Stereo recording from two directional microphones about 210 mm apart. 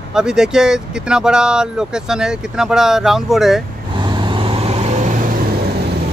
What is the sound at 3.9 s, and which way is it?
Vehicle, 20° right (ahead or behind).